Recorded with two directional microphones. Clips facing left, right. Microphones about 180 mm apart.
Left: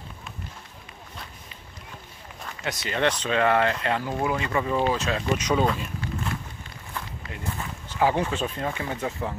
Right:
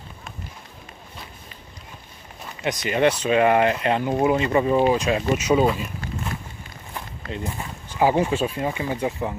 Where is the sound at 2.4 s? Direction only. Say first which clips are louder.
Right 6 dB; 20° right (ahead or behind).